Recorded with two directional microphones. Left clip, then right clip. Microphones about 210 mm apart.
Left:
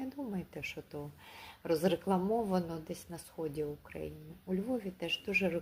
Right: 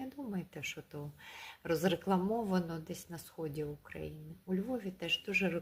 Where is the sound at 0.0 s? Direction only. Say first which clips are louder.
Left 2 dB; 20° right (ahead or behind).